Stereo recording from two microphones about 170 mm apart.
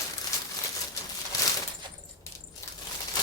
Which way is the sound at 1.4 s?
20° left (ahead or behind).